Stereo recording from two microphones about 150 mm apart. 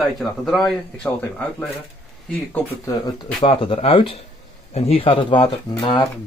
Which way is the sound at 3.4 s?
35° left (ahead or behind).